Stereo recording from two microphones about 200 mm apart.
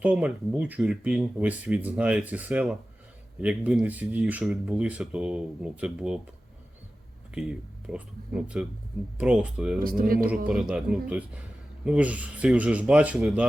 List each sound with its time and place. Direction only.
0.0 s speech: 5° right (ahead or behind)
7.9 s speech: 5° right (ahead or behind)
9.8 s speech: 45° right (ahead or behind)
10.2 s speech: 5° right (ahead or behind)